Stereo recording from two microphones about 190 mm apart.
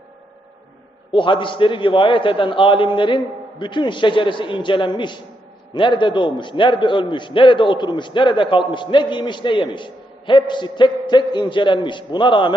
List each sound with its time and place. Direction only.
1.1 s a man's voice: 25° left (ahead or behind)